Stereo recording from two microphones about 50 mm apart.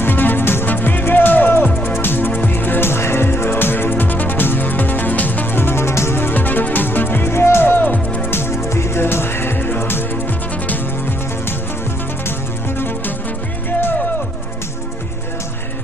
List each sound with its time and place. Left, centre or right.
0.0 s music: left
7.9 s music: left
8.3 s music: left
12.3 s music: left